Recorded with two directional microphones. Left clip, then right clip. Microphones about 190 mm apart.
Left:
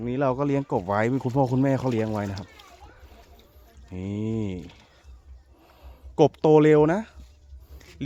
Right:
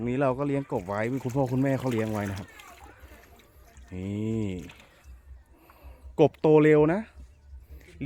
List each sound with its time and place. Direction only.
0.2 s speech: 10° left (ahead or behind)
3.9 s speech: centre (ahead or behind)